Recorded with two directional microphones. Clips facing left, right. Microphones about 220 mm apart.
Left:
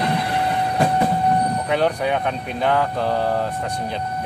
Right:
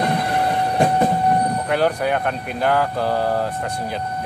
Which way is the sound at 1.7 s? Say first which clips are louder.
Right 1 dB; centre (ahead or behind).